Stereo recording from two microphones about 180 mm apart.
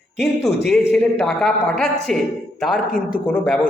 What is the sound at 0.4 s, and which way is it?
A man's voice, centre (ahead or behind).